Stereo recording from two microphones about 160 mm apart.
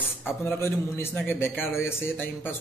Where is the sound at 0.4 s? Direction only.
15° left (ahead or behind).